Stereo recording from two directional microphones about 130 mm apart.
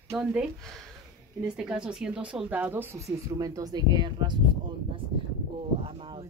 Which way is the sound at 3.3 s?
30° right (ahead or behind).